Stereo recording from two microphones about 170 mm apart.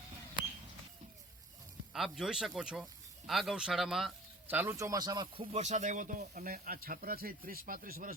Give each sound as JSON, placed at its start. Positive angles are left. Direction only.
{"t": 1.9, "sound": "speech", "side_deg": 0}